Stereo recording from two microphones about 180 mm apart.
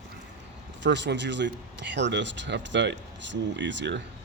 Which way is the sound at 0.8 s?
75° right (ahead or behind).